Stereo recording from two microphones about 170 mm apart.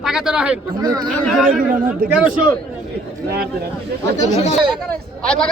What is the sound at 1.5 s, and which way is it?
Speech, 55° right (ahead or behind).